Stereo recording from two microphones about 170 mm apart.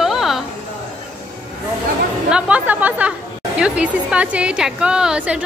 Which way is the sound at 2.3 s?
5° right (ahead or behind).